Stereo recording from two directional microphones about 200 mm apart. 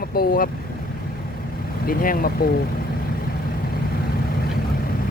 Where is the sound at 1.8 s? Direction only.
45° left (ahead or behind).